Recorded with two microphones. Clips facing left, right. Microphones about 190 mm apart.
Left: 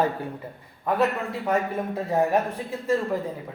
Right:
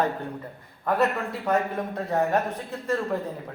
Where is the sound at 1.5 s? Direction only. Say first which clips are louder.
Even; 5° left (ahead or behind).